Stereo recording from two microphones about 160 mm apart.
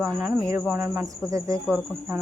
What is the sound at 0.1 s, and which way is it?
Speech, centre (ahead or behind).